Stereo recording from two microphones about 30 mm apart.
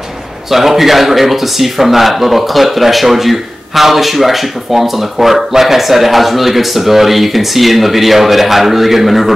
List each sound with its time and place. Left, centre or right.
0.5 s speech: centre